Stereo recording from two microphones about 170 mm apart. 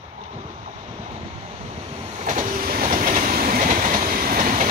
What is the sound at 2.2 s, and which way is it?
Vehicle, 45° right (ahead or behind).